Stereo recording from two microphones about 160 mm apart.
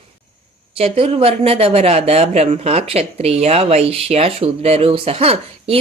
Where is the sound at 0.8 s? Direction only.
35° right (ahead or behind).